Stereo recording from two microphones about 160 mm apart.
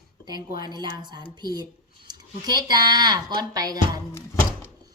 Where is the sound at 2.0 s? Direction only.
25° right (ahead or behind).